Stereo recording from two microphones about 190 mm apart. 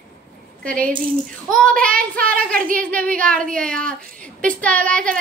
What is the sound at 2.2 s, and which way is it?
Speech, 50° right (ahead or behind).